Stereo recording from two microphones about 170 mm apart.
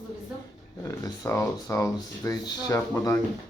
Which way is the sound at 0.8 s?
20° left (ahead or behind).